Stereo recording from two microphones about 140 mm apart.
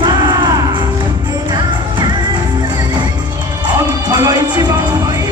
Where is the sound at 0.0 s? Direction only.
30° right (ahead or behind).